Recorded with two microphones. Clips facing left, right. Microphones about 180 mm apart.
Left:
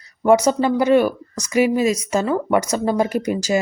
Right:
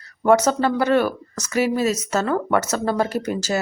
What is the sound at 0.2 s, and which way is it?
A woman's voice, 10° left (ahead or behind).